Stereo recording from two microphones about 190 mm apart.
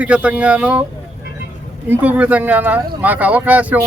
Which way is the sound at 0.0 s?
5° right (ahead or behind).